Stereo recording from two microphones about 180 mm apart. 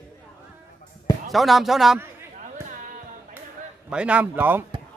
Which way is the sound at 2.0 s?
15° right (ahead or behind).